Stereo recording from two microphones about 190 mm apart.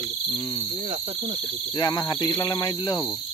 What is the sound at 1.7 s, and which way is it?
Speech, 20° left (ahead or behind).